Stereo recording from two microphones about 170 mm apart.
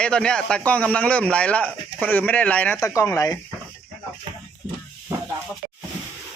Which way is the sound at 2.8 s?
20° left (ahead or behind).